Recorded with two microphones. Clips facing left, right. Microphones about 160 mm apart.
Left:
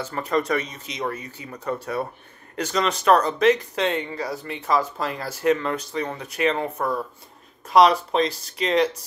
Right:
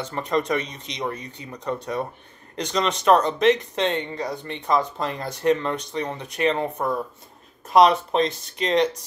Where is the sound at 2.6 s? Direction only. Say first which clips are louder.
Even; 5° left (ahead or behind).